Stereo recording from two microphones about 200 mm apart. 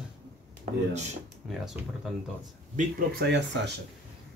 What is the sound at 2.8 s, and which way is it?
Speech, 55° right (ahead or behind).